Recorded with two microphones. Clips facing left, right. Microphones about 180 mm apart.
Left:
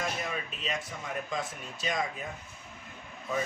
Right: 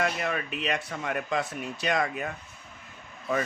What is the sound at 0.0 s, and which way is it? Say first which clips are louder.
Speech: right 6 dB; 70° right (ahead or behind).